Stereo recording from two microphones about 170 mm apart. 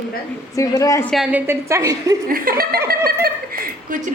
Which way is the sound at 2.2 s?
60° right (ahead or behind).